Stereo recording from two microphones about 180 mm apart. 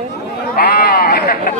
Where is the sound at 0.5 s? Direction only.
60° left (ahead or behind).